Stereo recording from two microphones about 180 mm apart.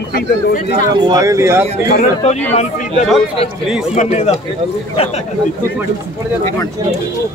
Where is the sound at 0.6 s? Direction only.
25° right (ahead or behind).